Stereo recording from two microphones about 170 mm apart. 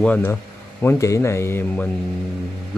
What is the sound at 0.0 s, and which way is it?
Speech, 10° left (ahead or behind).